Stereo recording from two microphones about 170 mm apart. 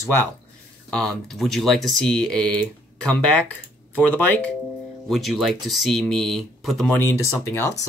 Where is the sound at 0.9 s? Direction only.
Centre (ahead or behind).